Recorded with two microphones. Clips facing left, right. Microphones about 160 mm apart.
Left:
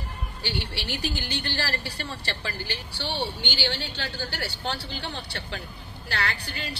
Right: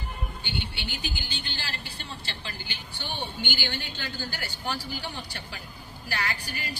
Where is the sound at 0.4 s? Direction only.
80° left.